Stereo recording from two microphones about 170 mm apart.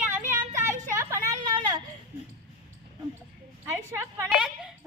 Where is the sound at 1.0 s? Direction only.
20° right (ahead or behind).